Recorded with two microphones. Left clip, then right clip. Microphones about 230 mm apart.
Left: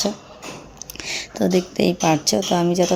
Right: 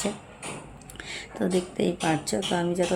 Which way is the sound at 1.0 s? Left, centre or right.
Left.